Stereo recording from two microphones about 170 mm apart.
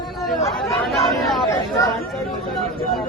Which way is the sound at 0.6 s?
Centre (ahead or behind).